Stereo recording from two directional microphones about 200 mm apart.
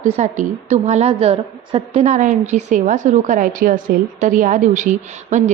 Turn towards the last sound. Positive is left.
turn(degrees=-35)  # may be behind; listen again after turning